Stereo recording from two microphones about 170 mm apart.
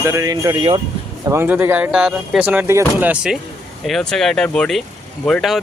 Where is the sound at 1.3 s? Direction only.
10° right (ahead or behind).